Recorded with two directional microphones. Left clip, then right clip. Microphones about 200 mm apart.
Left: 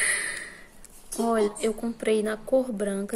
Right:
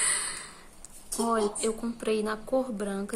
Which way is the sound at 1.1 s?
20° left (ahead or behind).